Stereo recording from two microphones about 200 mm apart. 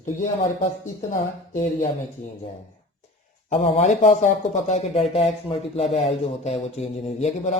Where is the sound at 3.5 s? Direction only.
35° left (ahead or behind).